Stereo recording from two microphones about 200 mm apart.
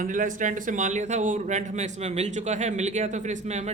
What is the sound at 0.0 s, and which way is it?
Speech, 40° right (ahead or behind).